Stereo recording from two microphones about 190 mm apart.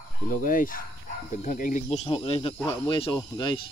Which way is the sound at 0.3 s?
45° left (ahead or behind).